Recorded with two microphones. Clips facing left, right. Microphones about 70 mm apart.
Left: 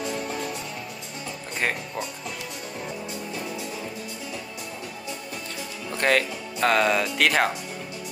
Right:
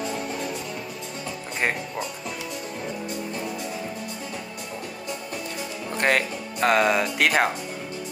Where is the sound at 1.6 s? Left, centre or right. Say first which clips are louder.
Right 1 dB; centre.